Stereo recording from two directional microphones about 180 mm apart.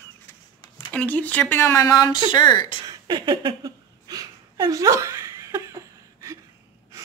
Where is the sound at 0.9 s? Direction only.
10° left (ahead or behind); by 2.7 s 25° left (ahead or behind).